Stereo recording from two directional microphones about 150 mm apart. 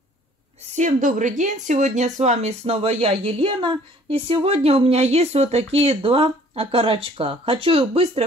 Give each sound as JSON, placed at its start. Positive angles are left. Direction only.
{"t": 0.7, "sound": "speech", "side_deg": -60}